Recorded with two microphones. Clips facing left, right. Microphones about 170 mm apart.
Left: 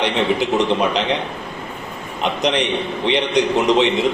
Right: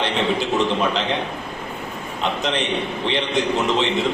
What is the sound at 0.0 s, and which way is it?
A man's voice, 15° left (ahead or behind).